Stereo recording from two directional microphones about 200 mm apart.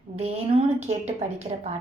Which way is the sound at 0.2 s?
30° right (ahead or behind).